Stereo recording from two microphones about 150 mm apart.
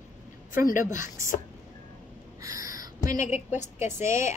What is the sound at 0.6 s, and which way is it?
Speech, 60° left (ahead or behind).